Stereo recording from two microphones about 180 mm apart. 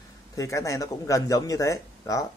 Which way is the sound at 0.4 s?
15° left (ahead or behind).